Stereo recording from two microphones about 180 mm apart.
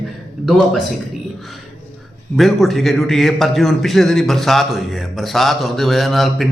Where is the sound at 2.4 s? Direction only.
Centre (ahead or behind).